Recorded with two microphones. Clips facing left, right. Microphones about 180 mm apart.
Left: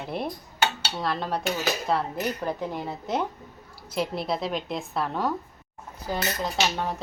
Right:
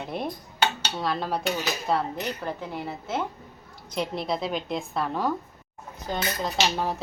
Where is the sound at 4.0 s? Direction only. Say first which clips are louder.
Even; centre (ahead or behind).